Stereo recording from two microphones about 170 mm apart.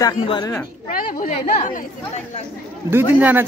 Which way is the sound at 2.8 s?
10° right (ahead or behind).